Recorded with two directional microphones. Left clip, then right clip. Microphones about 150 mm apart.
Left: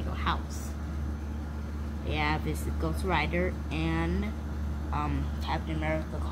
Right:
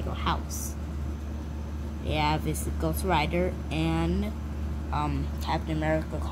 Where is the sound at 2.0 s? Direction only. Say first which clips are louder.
Right 3 dB; 30° right (ahead or behind).